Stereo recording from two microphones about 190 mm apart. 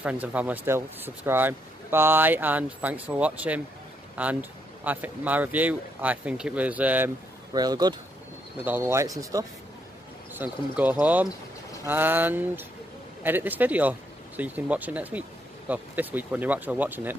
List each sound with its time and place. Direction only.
0.0 s speech: 10° right (ahead or behind)
7.5 s speech: 20° right (ahead or behind)